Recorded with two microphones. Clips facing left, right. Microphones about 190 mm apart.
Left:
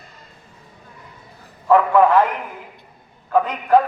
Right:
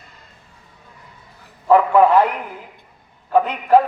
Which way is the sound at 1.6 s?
15° right (ahead or behind).